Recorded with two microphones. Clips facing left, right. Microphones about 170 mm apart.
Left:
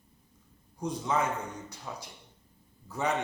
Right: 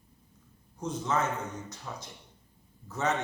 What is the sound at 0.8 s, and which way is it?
A man's voice, 10° left (ahead or behind).